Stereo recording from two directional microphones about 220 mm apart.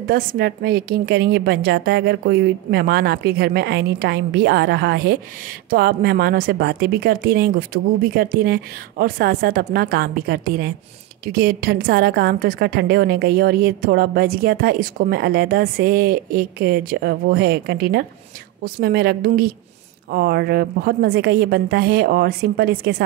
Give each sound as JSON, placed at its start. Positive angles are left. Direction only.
{"t": 0.0, "sound": "a woman's voice", "side_deg": -40}